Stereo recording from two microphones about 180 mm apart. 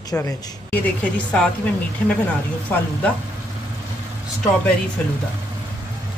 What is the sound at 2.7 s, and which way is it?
Speech, 10° left (ahead or behind).